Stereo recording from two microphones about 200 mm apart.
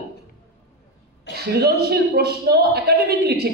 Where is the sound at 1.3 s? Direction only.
55° right (ahead or behind).